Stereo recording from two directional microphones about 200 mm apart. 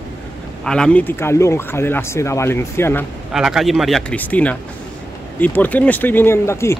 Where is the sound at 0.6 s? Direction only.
5° left (ahead or behind).